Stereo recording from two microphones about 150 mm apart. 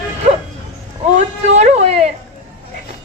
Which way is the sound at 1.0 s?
50° right (ahead or behind).